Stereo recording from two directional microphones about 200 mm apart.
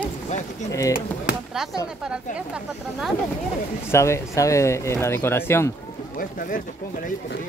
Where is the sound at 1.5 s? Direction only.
Centre (ahead or behind).